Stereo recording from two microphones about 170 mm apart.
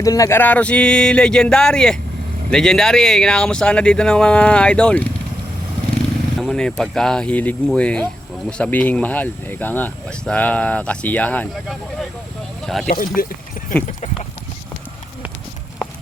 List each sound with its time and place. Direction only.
0.0 s speech: 20° left (ahead or behind)
6.3 s speech: 5° left (ahead or behind)
12.9 s speech: 55° left (ahead or behind)